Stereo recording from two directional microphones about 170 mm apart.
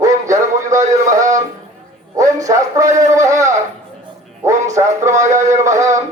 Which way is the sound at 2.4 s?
20° right (ahead or behind).